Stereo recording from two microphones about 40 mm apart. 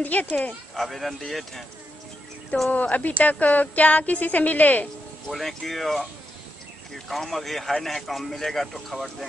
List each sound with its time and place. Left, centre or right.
0.0 s speech: left
0.7 s speech: centre
2.7 s speech: left
5.3 s speech: centre
7.1 s speech: centre